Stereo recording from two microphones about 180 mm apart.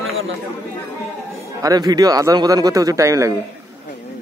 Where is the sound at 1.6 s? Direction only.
20° right (ahead or behind).